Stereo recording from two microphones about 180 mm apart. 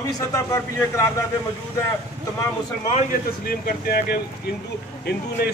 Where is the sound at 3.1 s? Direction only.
55° left (ahead or behind).